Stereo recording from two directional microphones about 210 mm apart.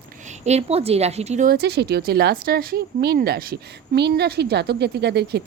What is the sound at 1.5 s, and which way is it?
Speech, 50° right (ahead or behind).